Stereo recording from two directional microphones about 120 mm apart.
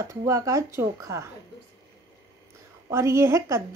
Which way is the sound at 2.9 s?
20° right (ahead or behind).